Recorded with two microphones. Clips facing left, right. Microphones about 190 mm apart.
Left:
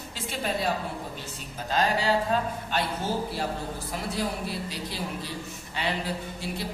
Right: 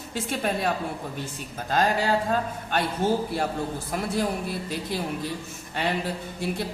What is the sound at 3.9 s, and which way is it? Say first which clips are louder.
A man's voice: right 4 dB; 50° right (ahead or behind).